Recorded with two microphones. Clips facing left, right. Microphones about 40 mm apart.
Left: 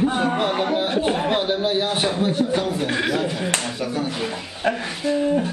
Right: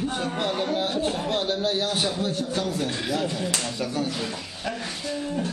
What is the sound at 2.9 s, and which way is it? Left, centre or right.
Speech, left.